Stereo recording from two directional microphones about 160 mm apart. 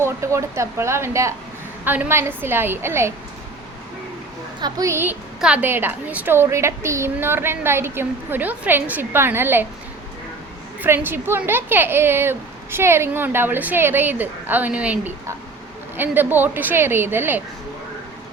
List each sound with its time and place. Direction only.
0.0 s speech: 20° right (ahead or behind)
4.6 s speech: 20° right (ahead or behind)
10.8 s speech: 15° right (ahead or behind)